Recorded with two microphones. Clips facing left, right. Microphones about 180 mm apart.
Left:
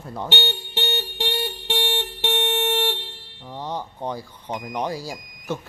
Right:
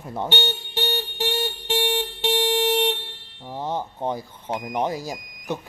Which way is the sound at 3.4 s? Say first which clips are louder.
Right 3 dB; 20° right (ahead or behind).